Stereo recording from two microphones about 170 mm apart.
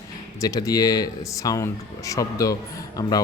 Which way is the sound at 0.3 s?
20° left (ahead or behind).